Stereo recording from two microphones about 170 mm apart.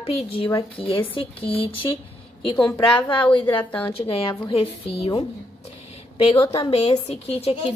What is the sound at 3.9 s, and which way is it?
Speech, 35° left (ahead or behind).